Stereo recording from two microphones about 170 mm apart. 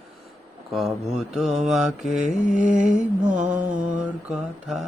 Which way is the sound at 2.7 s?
45° right (ahead or behind).